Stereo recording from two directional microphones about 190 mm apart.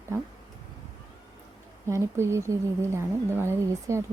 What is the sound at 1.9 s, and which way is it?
A woman's voice, 15° right (ahead or behind).